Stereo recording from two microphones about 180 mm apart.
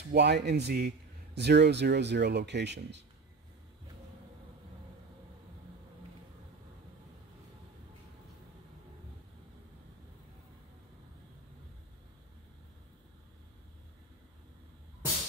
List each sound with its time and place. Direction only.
0.1 s a man's voice: 65° right (ahead or behind)